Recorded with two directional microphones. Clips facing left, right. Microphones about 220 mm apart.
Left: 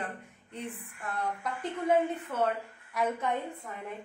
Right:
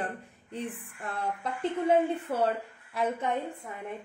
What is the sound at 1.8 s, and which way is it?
Speech, 35° right (ahead or behind).